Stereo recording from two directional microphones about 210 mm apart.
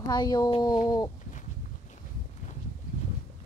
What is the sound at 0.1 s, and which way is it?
Speech, 20° left (ahead or behind).